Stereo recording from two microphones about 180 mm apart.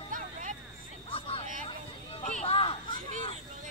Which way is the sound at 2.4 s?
30° left (ahead or behind).